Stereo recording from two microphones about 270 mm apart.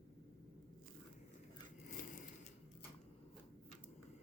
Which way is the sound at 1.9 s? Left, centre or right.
Left.